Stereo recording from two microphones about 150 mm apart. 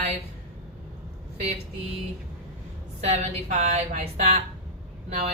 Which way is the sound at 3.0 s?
50° right (ahead or behind).